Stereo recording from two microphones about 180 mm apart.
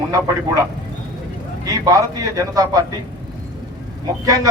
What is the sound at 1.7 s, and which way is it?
A man's voice, 20° right (ahead or behind).